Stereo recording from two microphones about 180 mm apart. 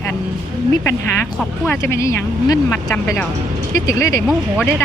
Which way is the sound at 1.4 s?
10° left (ahead or behind).